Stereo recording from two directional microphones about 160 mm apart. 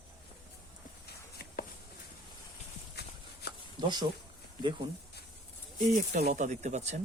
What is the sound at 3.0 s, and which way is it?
Walk, 90° left.